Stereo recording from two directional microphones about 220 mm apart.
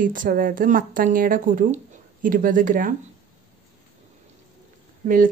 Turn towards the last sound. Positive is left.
turn(degrees=-40)  # may be behind; listen again after turning